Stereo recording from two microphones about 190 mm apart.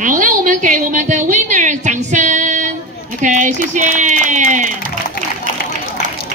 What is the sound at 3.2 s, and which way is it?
Speech, 40° right (ahead or behind).